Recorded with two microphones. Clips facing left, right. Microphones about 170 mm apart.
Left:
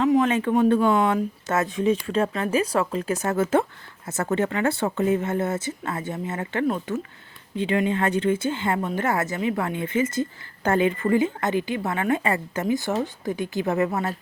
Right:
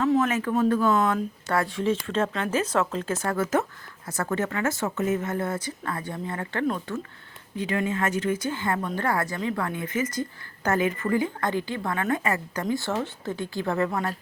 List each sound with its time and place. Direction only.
0.0 s a sound: 15° left (ahead or behind)
0.3 s speech: 30° left (ahead or behind)
0.9 s speech: 10° left (ahead or behind)